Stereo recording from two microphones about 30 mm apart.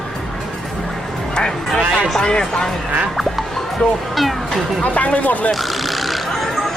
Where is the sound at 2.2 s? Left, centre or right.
Left.